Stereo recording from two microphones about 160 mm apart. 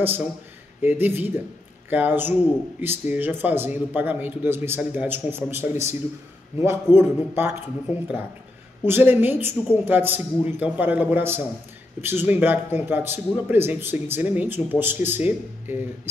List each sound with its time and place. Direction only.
0.0 s a man's voice: 10° right (ahead or behind)
8.8 s a man's voice: 15° right (ahead or behind)